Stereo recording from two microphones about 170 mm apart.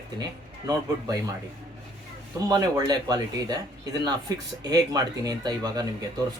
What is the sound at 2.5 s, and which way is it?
Speech, 25° right (ahead or behind).